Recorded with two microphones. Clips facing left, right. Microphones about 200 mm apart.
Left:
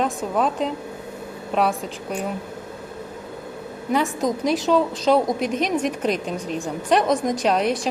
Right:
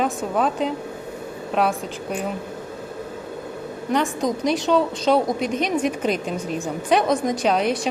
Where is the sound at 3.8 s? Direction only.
5° left (ahead or behind).